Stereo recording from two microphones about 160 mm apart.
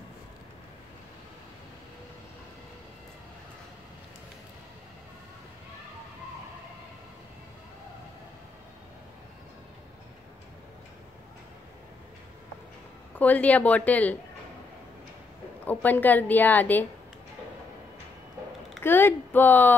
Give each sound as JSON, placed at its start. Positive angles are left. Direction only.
{"t": 13.2, "sound": "a woman's voice", "side_deg": 10}
{"t": 15.6, "sound": "a woman's voice", "side_deg": 10}
{"t": 18.8, "sound": "a woman's voice", "side_deg": 15}